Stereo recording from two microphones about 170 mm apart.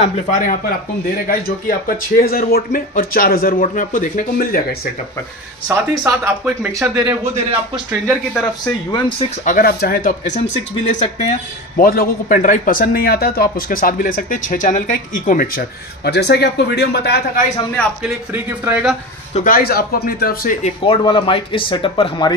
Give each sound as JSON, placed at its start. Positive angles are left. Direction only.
{"t": 0.0, "sound": "speech", "side_deg": 50}
{"t": 5.7, "sound": "speech", "side_deg": -15}
{"t": 8.3, "sound": "a man's voice", "side_deg": 5}
{"t": 9.4, "sound": "speech", "side_deg": 55}
{"t": 11.8, "sound": "speech", "side_deg": 60}
{"t": 18.0, "sound": "speech", "side_deg": -10}
{"t": 19.3, "sound": "speech", "side_deg": 55}
{"t": 20.6, "sound": "speech", "side_deg": 30}